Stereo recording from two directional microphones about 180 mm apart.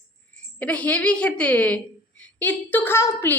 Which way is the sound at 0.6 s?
10° left (ahead or behind).